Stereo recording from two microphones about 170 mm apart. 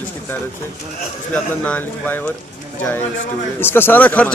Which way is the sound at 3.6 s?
15° left (ahead or behind).